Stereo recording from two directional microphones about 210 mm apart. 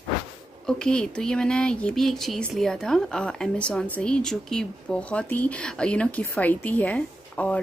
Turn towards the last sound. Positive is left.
turn(degrees=5)  # may be behind; listen again after turning